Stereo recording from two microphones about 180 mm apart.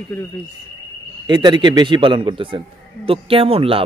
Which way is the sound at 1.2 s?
25° right (ahead or behind).